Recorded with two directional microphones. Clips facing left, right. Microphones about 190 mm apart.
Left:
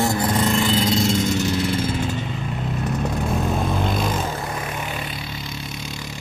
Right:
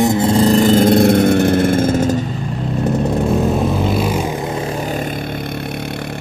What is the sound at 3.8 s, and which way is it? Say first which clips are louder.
Vehicle: right 6 dB; 5° right (ahead or behind).